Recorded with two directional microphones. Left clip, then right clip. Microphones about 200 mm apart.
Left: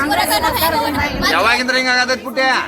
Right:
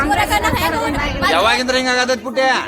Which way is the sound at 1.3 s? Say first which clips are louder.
Left 1 dB; 55° right (ahead or behind).